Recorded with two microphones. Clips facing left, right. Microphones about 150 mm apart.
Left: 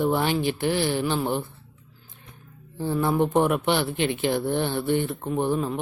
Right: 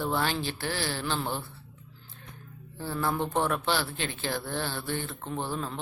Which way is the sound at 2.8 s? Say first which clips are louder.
Left 7 dB; 20° left (ahead or behind).